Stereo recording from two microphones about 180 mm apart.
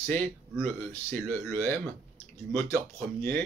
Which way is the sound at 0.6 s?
10° left (ahead or behind).